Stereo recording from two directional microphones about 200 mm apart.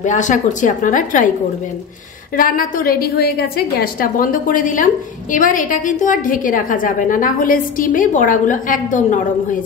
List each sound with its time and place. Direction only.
0.0 s a woman's voice: 40° left (ahead or behind)
2.3 s a woman's voice: 45° left (ahead or behind)